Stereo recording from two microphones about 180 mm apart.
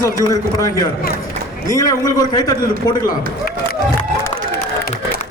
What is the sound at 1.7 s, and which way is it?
A man's voice, 20° left (ahead or behind).